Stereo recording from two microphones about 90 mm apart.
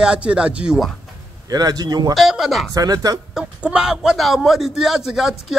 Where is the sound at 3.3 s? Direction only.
10° right (ahead or behind).